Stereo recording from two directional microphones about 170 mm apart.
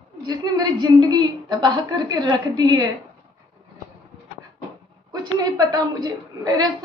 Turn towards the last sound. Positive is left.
turn(degrees=-25)  # may be behind; listen again after turning